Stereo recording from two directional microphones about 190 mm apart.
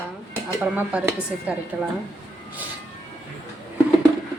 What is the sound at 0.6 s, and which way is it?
Speech, 10° right (ahead or behind).